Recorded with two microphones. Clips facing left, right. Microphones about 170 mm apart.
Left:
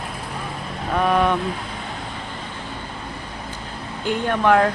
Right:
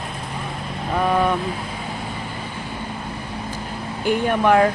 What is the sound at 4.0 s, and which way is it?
Speech, 10° right (ahead or behind).